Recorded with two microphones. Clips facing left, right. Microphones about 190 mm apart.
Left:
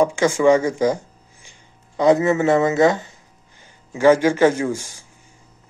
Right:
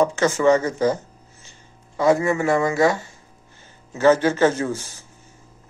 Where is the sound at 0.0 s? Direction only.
15° left (ahead or behind).